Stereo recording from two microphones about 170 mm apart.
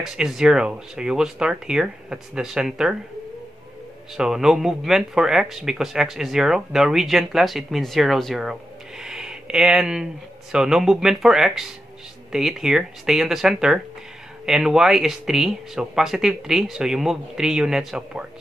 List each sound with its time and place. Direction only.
0.0 s speech: centre (ahead or behind)
4.2 s speech: 5° right (ahead or behind)